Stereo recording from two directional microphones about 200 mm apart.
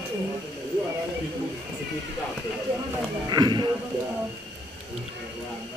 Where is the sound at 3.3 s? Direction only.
20° right (ahead or behind).